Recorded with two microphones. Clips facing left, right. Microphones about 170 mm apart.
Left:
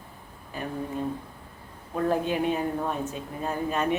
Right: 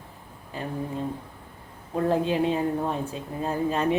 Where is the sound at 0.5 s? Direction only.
30° right (ahead or behind).